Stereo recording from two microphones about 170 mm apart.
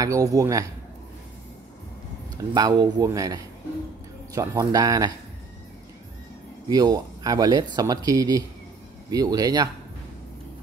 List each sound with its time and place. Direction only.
0.0 s speech: 20° right (ahead or behind)
2.3 s speech: 25° right (ahead or behind)
6.7 s speech: 25° right (ahead or behind)